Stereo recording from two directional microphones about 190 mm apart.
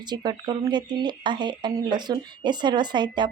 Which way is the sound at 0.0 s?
20° right (ahead or behind).